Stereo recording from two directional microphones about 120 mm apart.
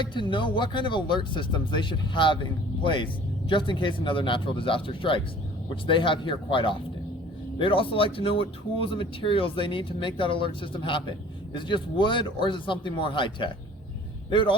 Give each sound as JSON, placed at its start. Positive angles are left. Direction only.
{"t": 0.0, "sound": "a man's voice", "side_deg": 40}